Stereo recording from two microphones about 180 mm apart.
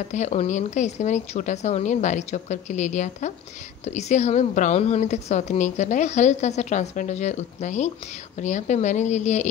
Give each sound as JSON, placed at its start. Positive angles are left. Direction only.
{"t": 0.1, "sound": "a woman's voice", "side_deg": 40}